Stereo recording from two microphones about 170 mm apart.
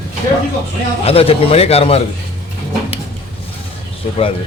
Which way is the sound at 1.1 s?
35° left (ahead or behind).